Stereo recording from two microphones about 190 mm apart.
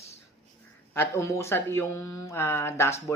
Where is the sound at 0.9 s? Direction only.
15° left (ahead or behind).